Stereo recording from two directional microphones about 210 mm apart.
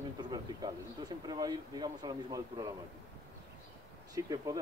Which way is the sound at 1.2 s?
20° right (ahead or behind).